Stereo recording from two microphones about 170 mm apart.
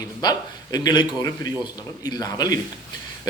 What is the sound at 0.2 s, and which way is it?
A man's voice, 25° left (ahead or behind).